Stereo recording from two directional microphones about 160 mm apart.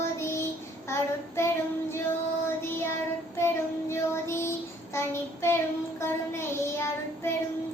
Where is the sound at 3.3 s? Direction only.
15° left (ahead or behind).